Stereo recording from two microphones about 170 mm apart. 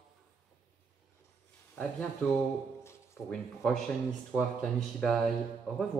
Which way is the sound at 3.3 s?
5° left (ahead or behind).